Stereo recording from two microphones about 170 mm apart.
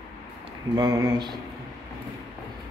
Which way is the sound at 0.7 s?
25° right (ahead or behind).